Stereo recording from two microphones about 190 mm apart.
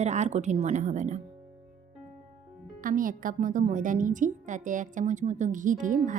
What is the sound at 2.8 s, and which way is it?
A woman's voice, 45° right (ahead or behind).